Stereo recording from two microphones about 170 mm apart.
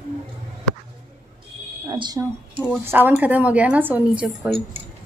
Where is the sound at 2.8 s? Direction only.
10° right (ahead or behind).